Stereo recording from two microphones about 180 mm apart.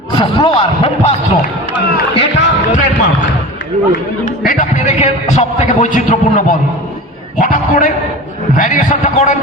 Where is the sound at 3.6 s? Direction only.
80° left.